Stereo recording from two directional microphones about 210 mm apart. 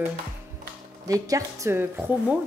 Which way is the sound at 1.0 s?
15° right (ahead or behind).